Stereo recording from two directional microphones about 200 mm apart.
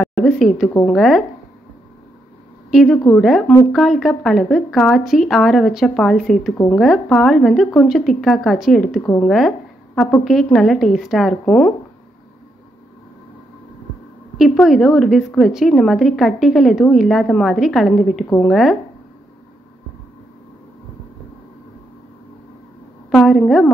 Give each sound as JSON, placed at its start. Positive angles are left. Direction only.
{"t": 0.1, "sound": "a sound", "side_deg": 0}
{"t": 0.8, "sound": "a woman's voice", "side_deg": 0}
{"t": 2.7, "sound": "a woman's voice", "side_deg": 0}
{"t": 14.3, "sound": "a woman's voice", "side_deg": 0}
{"t": 23.1, "sound": "a woman's voice", "side_deg": 0}